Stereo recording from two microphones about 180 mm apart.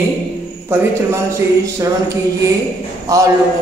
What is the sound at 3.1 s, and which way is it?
Speech, 20° right (ahead or behind).